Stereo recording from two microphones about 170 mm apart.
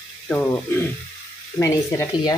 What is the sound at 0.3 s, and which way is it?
Speech, 10° left (ahead or behind).